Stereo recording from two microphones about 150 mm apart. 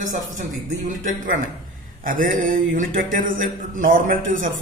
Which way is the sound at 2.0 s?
65° right (ahead or behind).